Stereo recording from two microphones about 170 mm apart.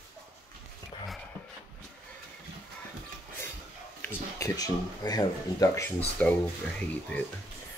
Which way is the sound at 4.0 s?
20° left (ahead or behind).